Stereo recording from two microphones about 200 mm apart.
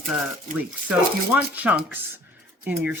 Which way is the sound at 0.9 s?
5° right (ahead or behind).